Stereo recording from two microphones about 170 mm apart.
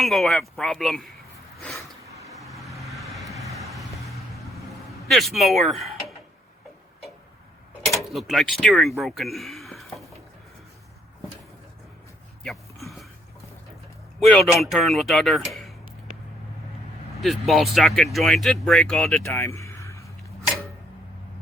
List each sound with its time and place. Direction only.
0.0 s speech: centre (ahead or behind)
1.5 s a sound: centre (ahead or behind)
2.4 s vehicle: centre (ahead or behind)
5.0 s speech: centre (ahead or behind)
7.9 s speech: centre (ahead or behind)
12.4 s a sound: centre (ahead or behind)
14.2 s speech: centre (ahead or behind)
17.2 s speech: centre (ahead or behind)
19.2 s a sound: 15° left (ahead or behind)